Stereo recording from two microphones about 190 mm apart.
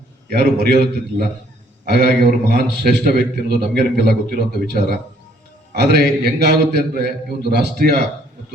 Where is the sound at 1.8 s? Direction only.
55° right (ahead or behind).